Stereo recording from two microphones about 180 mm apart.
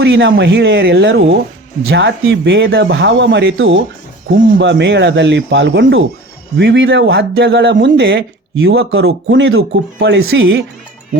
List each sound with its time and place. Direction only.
0.0 s speech: 90° right
8.6 s speech: 90° right
10.0 s speech: 75° right (ahead or behind); by 10.6 s 90° right